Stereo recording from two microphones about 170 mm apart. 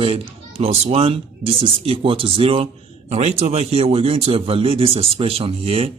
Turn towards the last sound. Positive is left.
turn(degrees=-35)  # may be behind; listen again after turning